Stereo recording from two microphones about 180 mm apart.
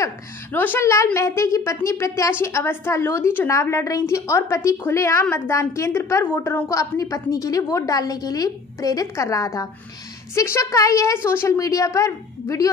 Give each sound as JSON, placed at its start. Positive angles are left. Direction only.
{"t": 0.0, "sound": "a woman's voice", "side_deg": 10}